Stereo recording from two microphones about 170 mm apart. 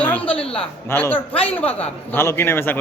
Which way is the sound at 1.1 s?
35° left (ahead or behind).